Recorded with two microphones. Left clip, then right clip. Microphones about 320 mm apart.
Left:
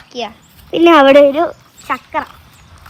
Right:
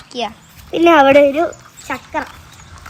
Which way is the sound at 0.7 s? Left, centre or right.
Left.